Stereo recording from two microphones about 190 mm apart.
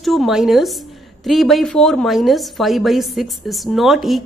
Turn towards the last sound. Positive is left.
turn(degrees=0)  # may be behind; listen again after turning